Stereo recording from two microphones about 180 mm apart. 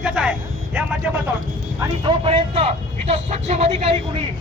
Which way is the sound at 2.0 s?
35° right (ahead or behind).